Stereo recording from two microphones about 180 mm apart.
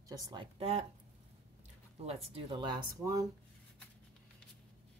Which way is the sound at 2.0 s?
35° right (ahead or behind).